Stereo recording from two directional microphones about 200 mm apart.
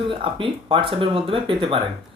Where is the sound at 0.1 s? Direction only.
25° right (ahead or behind).